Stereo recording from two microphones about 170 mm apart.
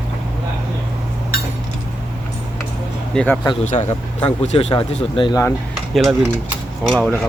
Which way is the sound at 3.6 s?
45° left (ahead or behind).